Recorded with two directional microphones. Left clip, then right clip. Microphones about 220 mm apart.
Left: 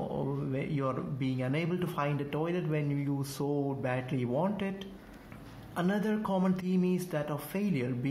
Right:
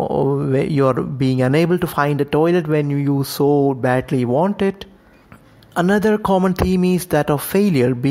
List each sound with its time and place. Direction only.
0.1 s speech: 45° right (ahead or behind)